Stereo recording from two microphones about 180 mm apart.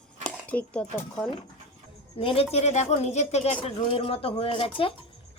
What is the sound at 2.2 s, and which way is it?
A woman's voice, 30° left (ahead or behind).